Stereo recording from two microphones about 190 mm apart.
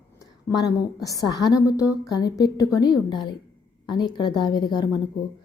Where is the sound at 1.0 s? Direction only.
20° left (ahead or behind).